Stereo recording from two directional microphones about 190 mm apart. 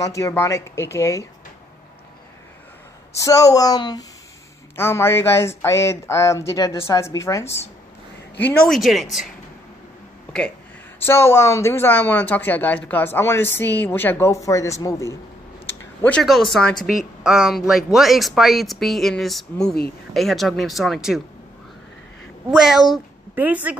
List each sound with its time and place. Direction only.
0.0 s speech: 15° left (ahead or behind)
3.2 s speech: 15° left (ahead or behind); by 9.3 s centre (ahead or behind)
11.0 s speech: 10° left (ahead or behind)
16.0 s speech: 5° left (ahead or behind)
22.5 s a woman's voice: centre (ahead or behind)